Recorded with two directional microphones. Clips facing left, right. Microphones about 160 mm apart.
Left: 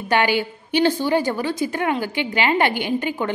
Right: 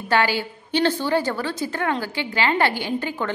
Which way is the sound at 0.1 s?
15° left (ahead or behind).